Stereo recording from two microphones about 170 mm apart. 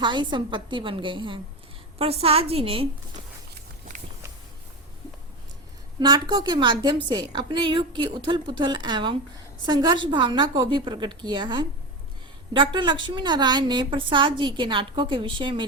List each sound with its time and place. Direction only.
0.0 s a woman's voice: 25° right (ahead or behind)
6.0 s a woman's voice: 25° right (ahead or behind)